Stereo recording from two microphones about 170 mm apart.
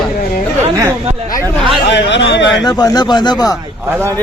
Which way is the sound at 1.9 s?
90° left.